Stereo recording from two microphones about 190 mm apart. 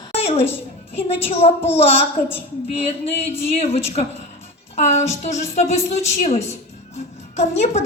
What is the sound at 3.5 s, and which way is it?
A woman's voice, 30° left (ahead or behind).